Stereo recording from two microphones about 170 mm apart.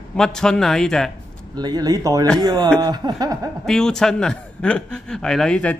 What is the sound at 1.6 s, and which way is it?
Speech, 20° right (ahead or behind).